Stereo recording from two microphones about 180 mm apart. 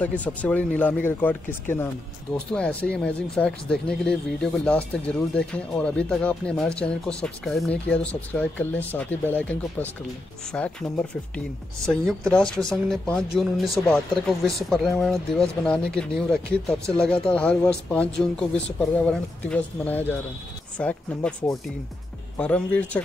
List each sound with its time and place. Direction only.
0.0 s speech: 10° left (ahead or behind)